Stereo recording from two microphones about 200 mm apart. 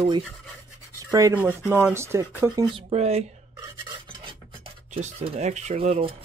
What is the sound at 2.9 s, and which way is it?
Speech, 30° right (ahead or behind).